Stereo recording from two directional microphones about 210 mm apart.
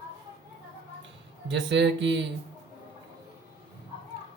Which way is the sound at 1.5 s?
55° right (ahead or behind).